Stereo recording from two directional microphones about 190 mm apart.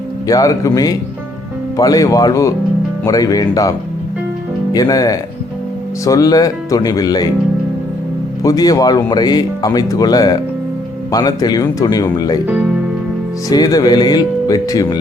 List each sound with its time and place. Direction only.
0.3 s speech: 20° left (ahead or behind)
8.4 s speech: 20° left (ahead or behind)
13.5 s speech: 20° left (ahead or behind)